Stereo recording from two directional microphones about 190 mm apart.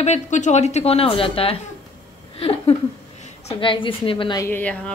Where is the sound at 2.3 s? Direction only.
30° left (ahead or behind).